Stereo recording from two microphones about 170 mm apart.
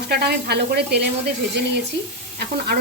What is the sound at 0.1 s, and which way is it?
Speech, 70° right (ahead or behind).